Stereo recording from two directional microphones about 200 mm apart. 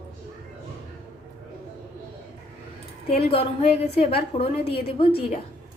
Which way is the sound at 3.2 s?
30° left (ahead or behind).